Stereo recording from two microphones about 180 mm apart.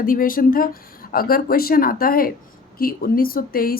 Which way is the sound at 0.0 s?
50° left (ahead or behind).